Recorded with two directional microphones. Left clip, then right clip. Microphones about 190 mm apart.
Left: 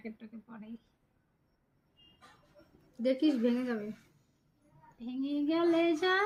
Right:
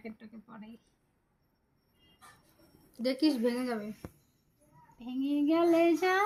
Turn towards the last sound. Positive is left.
turn(degrees=-20)  # may be behind; listen again after turning